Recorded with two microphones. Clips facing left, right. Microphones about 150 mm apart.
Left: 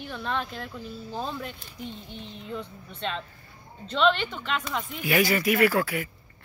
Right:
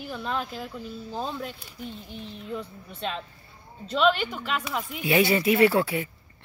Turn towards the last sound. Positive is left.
turn(degrees=-25)  # may be behind; listen again after turning